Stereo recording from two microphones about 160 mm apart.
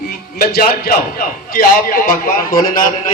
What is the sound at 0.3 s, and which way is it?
A man's voice, 70° left (ahead or behind).